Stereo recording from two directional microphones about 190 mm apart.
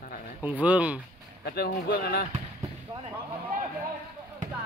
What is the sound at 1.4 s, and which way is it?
Speech, 55° left (ahead or behind).